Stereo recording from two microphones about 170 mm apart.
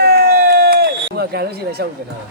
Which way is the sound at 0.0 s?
65° right (ahead or behind).